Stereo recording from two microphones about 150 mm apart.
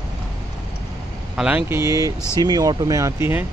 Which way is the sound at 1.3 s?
10° right (ahead or behind).